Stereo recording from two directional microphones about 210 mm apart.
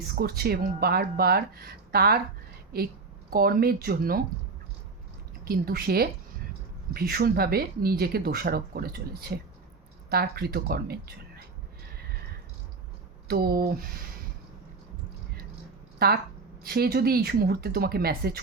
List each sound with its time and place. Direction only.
0.2 s speech: 45° right (ahead or behind)
3.2 s speech: 45° right (ahead or behind)
5.5 s speech: 45° right (ahead or behind)
13.2 s speech: 45° right (ahead or behind)
16.6 s speech: 50° right (ahead or behind)